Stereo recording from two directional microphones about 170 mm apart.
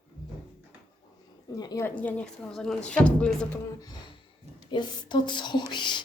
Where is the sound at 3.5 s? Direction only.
20° left (ahead or behind).